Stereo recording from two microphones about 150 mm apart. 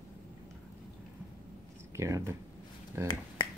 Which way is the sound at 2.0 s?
20° right (ahead or behind).